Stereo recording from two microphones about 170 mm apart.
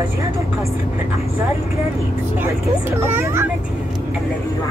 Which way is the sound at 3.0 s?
15° right (ahead or behind).